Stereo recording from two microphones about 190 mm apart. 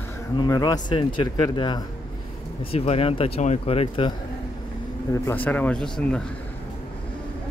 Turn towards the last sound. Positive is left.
turn(degrees=5)  # may be behind; listen again after turning